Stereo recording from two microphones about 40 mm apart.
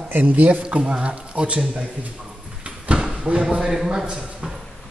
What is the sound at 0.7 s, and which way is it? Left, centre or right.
Speech, right.